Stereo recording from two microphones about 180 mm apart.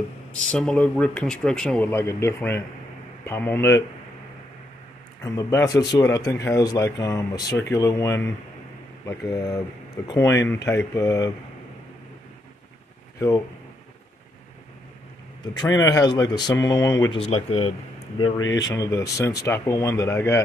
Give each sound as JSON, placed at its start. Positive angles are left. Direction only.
{"t": 0.5, "sound": "speech", "side_deg": 5}
{"t": 5.2, "sound": "speech", "side_deg": 15}
{"t": 15.6, "sound": "speech", "side_deg": 20}
{"t": 17.0, "sound": "speech", "side_deg": 30}
{"t": 18.4, "sound": "speech", "side_deg": 85}
{"t": 18.8, "sound": "speech", "side_deg": 15}